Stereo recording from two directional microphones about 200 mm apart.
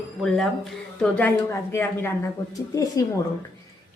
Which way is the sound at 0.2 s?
Centre (ahead or behind).